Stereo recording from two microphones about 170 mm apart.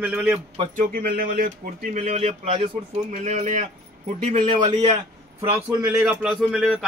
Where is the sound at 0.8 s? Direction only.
60° right (ahead or behind); by 5.0 s 35° right (ahead or behind).